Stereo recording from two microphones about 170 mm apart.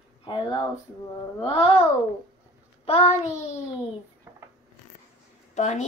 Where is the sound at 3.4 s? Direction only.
40° left (ahead or behind).